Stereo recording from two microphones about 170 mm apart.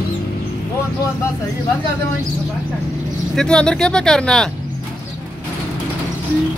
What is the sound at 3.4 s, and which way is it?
Speech, 5° left (ahead or behind).